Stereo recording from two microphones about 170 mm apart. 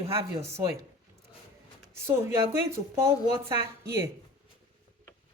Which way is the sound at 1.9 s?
15° right (ahead or behind).